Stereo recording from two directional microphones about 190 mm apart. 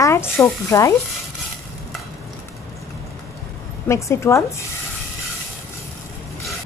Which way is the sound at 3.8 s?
15° left (ahead or behind).